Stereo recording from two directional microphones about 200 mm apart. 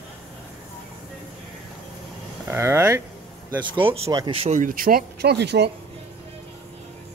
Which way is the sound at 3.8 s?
25° right (ahead or behind).